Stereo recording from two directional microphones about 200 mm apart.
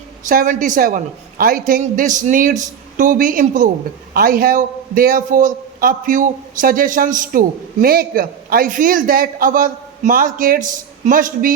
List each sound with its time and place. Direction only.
0.3 s a woman's voice: 40° right (ahead or behind)